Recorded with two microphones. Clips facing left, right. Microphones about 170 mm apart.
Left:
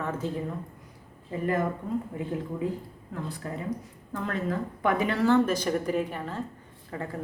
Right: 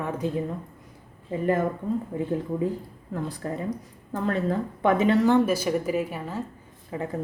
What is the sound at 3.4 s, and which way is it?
A woman's voice, 35° right (ahead or behind).